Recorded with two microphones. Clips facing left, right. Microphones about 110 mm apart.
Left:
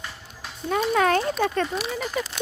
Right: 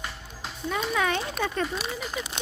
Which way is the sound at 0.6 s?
45° left (ahead or behind).